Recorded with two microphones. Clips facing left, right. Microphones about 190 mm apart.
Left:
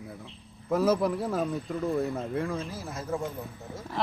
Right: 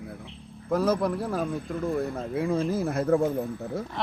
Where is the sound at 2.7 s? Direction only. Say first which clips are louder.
Right 10 dB; 55° right (ahead or behind).